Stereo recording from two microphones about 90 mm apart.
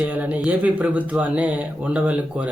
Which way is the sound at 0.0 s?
15° right (ahead or behind).